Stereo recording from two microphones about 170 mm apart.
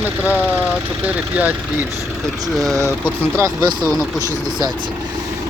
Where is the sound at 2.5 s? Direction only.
Centre (ahead or behind).